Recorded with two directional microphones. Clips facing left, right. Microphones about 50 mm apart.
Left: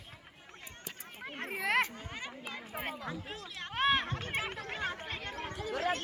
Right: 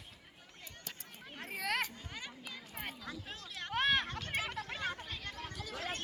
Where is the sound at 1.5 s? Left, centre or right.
Left.